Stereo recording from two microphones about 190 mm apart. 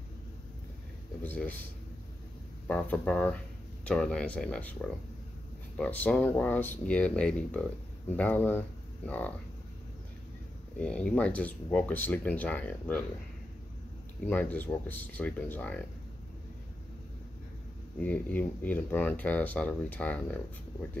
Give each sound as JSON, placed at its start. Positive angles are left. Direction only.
{"t": 1.2, "sound": "speech", "side_deg": 10}
{"t": 2.7, "sound": "speech", "side_deg": 5}
{"t": 10.8, "sound": "speech", "side_deg": 5}
{"t": 14.2, "sound": "speech", "side_deg": 10}
{"t": 18.0, "sound": "speech", "side_deg": 5}